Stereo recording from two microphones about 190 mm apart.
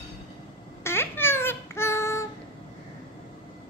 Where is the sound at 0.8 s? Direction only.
10° left (ahead or behind).